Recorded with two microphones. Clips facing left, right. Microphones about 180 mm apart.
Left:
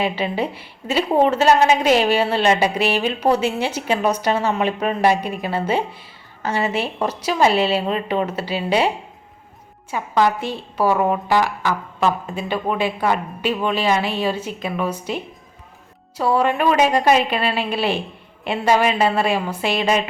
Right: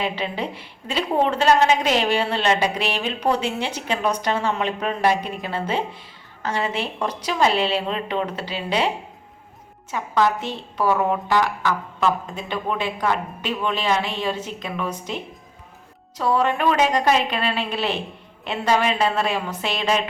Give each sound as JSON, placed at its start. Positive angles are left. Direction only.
{"t": 0.0, "sound": "a woman's voice", "side_deg": 10}
{"t": 9.9, "sound": "a woman's voice", "side_deg": 10}